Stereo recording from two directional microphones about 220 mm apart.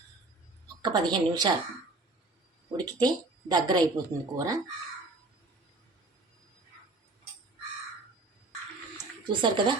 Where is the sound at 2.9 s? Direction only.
20° right (ahead or behind).